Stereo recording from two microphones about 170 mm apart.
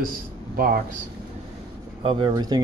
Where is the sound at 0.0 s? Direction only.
55° right (ahead or behind).